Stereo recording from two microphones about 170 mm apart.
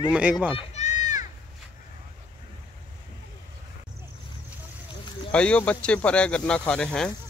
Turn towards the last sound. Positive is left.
turn(degrees=5)  # may be behind; listen again after turning